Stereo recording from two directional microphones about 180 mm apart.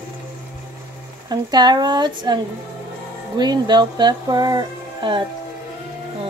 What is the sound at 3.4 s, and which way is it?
Speech, 25° right (ahead or behind).